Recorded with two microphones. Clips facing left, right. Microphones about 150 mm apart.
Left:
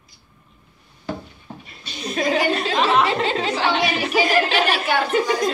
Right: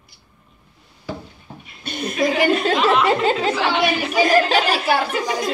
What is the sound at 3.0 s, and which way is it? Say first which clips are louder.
Snicker: right 4 dB; 45° right (ahead or behind).